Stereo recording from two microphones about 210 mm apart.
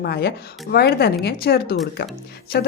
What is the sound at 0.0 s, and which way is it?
Speech, 50° left (ahead or behind).